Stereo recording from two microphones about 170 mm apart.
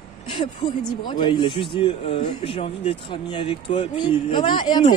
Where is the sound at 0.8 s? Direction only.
25° left (ahead or behind).